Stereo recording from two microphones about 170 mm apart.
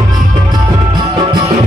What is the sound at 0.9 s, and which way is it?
Music, 25° right (ahead or behind).